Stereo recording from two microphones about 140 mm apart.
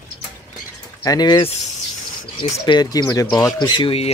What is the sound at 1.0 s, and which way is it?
Speech, 30° left (ahead or behind).